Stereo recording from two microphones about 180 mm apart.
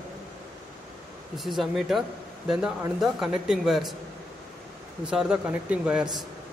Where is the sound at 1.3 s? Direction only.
Centre (ahead or behind).